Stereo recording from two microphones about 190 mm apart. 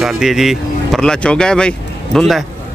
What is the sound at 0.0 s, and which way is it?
Speech, centre (ahead or behind).